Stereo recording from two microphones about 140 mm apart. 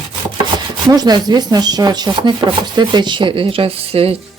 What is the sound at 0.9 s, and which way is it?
Speech, 30° right (ahead or behind).